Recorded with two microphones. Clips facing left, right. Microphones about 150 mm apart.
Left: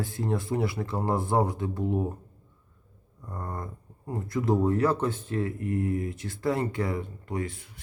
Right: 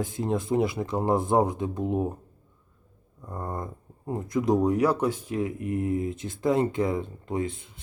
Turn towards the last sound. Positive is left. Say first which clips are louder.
# right 3 dB
turn(degrees=-20)  # may be behind; listen again after turning